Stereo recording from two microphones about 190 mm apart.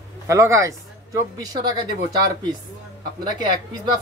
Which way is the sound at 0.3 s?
15° right (ahead or behind).